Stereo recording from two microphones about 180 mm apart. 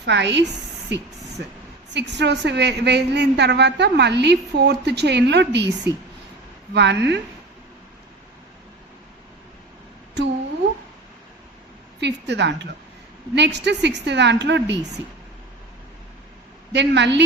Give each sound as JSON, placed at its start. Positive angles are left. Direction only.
{"t": 0.0, "sound": "a woman's voice", "side_deg": -75}
{"t": 11.9, "sound": "a woman's voice", "side_deg": -70}
{"t": 16.7, "sound": "a woman's voice", "side_deg": -75}